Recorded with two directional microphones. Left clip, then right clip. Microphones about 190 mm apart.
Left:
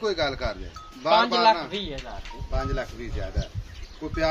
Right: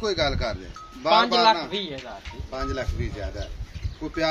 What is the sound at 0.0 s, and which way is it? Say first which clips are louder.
Speech: right 1 dB; 40° right (ahead or behind).